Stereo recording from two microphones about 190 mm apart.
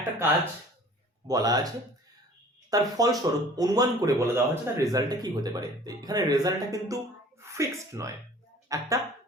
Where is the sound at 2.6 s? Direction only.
20° right (ahead or behind).